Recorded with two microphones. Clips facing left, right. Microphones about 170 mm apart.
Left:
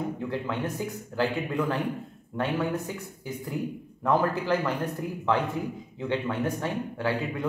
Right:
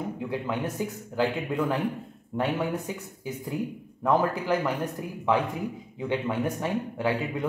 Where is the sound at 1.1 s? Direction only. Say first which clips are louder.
Even; 15° right (ahead or behind).